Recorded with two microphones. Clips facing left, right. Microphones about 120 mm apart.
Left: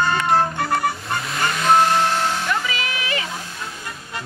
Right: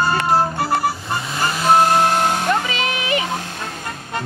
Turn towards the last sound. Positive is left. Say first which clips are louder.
# right 5 dB
turn(degrees=-20)  # may be behind; listen again after turning